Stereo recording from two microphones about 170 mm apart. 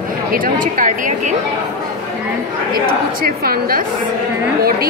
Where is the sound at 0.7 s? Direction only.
50° right (ahead or behind).